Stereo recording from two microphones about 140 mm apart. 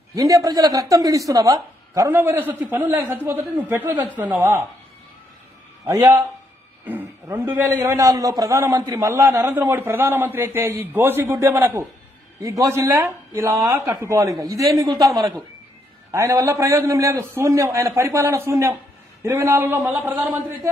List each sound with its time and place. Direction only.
0.1 s a man's voice: 25° right (ahead or behind)
6.8 s a man's voice: 15° right (ahead or behind)